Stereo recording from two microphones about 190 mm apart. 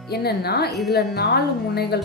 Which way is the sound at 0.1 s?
55° left (ahead or behind).